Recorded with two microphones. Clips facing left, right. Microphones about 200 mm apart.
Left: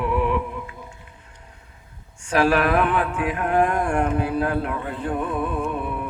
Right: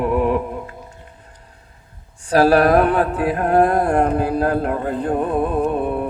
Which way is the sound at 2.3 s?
35° right (ahead or behind).